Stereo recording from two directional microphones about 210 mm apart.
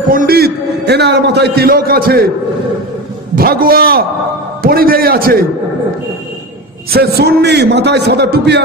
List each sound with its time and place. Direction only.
0.1 s a man's voice: 45° right (ahead or behind)
3.3 s a man's voice: 45° right (ahead or behind)
6.9 s a man's voice: 50° right (ahead or behind)